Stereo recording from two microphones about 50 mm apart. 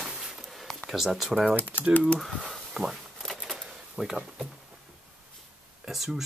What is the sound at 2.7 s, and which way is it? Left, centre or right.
Speech, centre.